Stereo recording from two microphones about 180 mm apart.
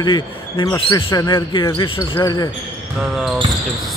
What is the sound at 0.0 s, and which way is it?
Speech, 25° left (ahead or behind).